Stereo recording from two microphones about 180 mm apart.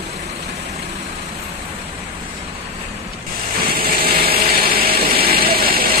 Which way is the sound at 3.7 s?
55° right (ahead or behind).